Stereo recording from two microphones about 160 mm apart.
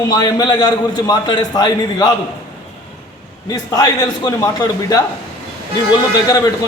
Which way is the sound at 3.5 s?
25° left (ahead or behind).